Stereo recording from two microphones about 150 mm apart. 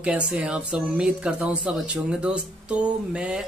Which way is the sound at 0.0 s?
5° right (ahead or behind).